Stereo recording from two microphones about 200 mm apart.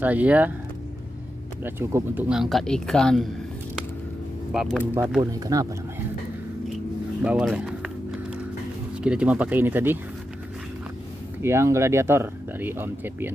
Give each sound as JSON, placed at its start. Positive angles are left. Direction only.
{"t": 0.0, "sound": "speech", "side_deg": -10}
{"t": 1.6, "sound": "speech", "side_deg": -10}
{"t": 4.5, "sound": "speech", "side_deg": -5}
{"t": 5.2, "sound": "speech", "side_deg": -15}
{"t": 7.2, "sound": "run", "side_deg": -5}
{"t": 8.9, "sound": "speech", "side_deg": -5}
{"t": 11.4, "sound": "speech", "side_deg": -15}